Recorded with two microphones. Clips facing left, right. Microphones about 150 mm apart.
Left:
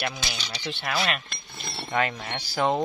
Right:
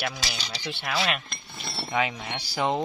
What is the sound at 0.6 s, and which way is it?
Speech, 15° right (ahead or behind).